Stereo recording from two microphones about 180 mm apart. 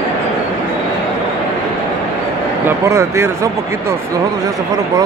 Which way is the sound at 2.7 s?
15° right (ahead or behind).